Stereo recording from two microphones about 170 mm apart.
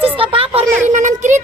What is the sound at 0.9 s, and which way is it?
Speech, 45° right (ahead or behind).